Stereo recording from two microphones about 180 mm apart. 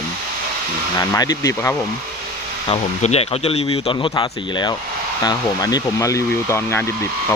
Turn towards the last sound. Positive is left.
turn(degrees=15)  # may be behind; listen again after turning